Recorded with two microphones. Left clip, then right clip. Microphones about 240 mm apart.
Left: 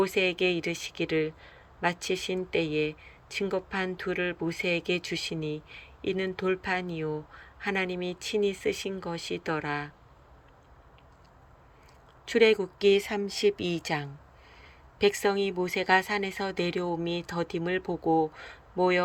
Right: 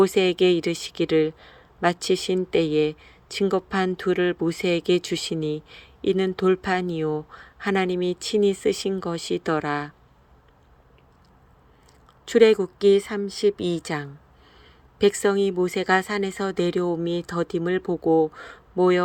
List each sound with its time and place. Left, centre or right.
0.0 s speech: right
12.2 s speech: centre